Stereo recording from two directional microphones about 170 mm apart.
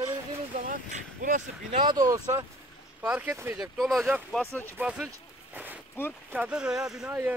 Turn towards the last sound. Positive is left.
turn(degrees=-5)  # may be behind; listen again after turning